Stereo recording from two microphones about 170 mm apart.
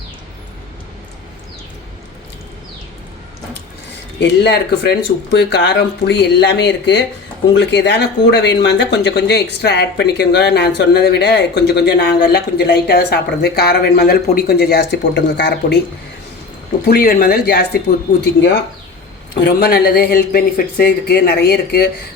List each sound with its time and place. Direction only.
4.2 s speech: 85° left
16.8 s speech: 65° left (ahead or behind)
19.3 s speech: 85° left; by 21.8 s 70° left (ahead or behind)